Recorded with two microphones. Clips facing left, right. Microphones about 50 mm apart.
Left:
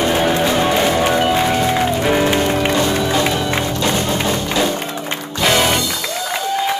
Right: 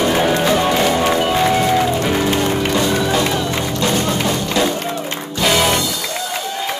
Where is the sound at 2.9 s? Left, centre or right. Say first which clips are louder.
Even; centre.